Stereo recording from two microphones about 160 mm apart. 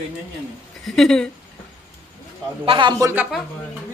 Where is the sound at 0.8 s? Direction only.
Centre (ahead or behind).